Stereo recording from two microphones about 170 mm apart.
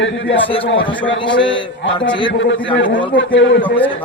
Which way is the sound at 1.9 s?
30° left (ahead or behind).